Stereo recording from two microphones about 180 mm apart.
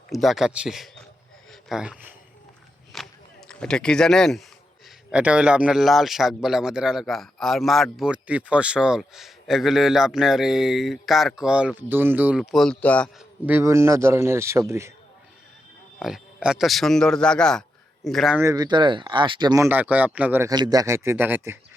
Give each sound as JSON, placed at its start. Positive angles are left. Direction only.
{"t": 0.1, "sound": "speech", "side_deg": 0}
{"t": 2.9, "sound": "a sound", "side_deg": 0}
{"t": 3.5, "sound": "speech", "side_deg": 5}
{"t": 13.4, "sound": "speech", "side_deg": -10}
{"t": 16.0, "sound": "speech", "side_deg": 0}
{"t": 18.3, "sound": "speech", "side_deg": -15}